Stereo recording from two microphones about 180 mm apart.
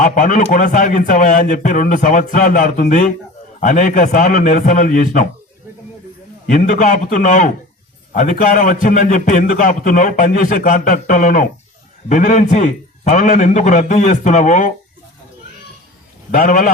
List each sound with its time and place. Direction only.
0.0 s a man's voice: 45° left (ahead or behind)
6.5 s a man's voice: 45° left (ahead or behind)
16.3 s a man's voice: 45° left (ahead or behind)